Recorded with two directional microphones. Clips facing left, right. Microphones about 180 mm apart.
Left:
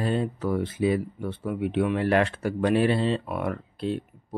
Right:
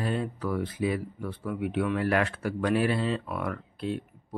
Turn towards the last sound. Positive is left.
turn(degrees=30)  # may be behind; listen again after turning